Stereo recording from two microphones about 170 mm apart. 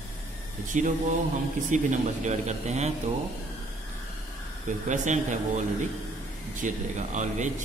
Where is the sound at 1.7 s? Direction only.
45° right (ahead or behind).